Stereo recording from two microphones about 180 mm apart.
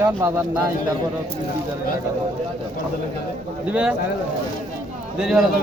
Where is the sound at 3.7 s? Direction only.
5° right (ahead or behind).